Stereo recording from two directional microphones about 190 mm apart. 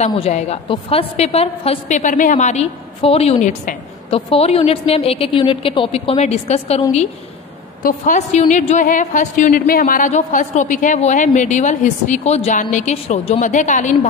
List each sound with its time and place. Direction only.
0.0 s a woman's voice: 35° left (ahead or behind)